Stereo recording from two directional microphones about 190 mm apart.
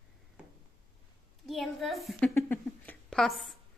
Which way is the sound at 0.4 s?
5° right (ahead or behind).